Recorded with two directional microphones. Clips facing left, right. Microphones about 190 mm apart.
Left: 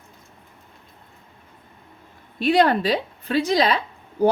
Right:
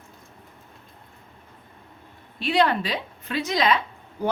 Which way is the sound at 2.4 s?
40° left (ahead or behind).